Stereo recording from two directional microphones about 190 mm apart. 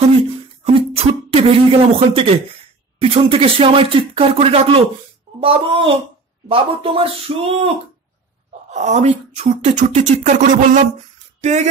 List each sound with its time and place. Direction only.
0.9 s speech: 30° right (ahead or behind)
8.7 s speech: 40° right (ahead or behind)